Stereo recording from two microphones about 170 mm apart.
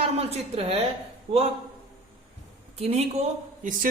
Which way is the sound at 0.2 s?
35° right (ahead or behind).